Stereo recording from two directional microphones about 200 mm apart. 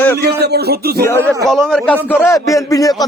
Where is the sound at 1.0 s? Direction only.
10° left (ahead or behind).